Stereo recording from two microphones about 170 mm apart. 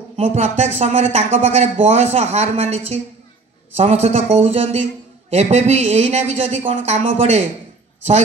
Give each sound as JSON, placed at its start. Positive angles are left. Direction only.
{"t": 0.1, "sound": "speech", "side_deg": -40}